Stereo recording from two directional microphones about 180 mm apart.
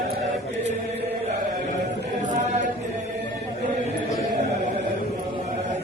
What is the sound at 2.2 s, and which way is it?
Chant, 45° right (ahead or behind).